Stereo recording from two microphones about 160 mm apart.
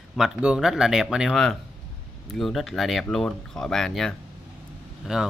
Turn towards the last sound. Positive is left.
turn(degrees=-5)  # may be behind; listen again after turning